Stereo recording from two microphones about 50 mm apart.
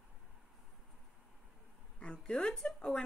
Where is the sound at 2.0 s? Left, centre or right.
Centre.